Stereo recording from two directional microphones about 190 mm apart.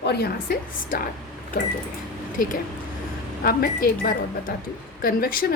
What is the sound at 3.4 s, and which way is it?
A woman's voice, 50° left (ahead or behind).